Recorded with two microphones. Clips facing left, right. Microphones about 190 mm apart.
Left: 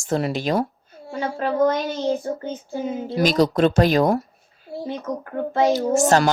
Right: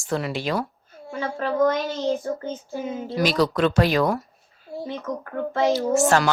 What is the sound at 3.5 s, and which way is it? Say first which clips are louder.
Speech: left 3 dB; 45° left (ahead or behind).